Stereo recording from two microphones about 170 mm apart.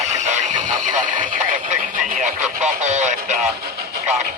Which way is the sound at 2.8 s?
45° right (ahead or behind).